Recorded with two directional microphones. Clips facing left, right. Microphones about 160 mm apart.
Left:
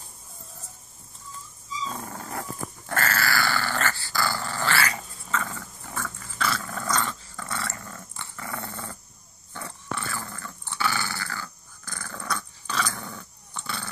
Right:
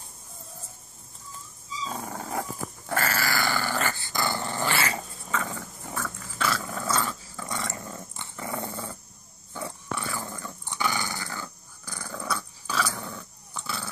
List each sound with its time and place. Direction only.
1.9 s dog: 15° right (ahead or behind)
5.9 s dog: 5° right (ahead or behind)